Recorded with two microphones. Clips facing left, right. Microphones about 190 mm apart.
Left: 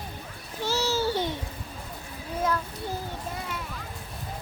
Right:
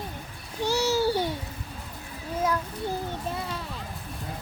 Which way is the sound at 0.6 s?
15° right (ahead or behind).